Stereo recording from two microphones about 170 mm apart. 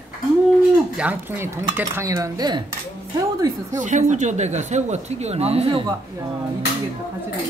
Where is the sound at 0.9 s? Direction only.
10° right (ahead or behind).